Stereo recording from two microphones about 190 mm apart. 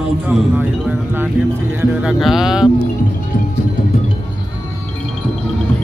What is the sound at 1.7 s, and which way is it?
Speech, 5° right (ahead or behind).